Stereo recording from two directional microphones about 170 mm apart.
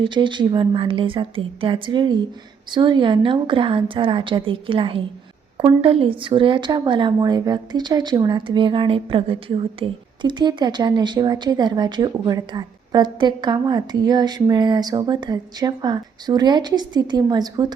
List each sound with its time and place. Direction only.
0.0 s a woman's voice: 25° right (ahead or behind)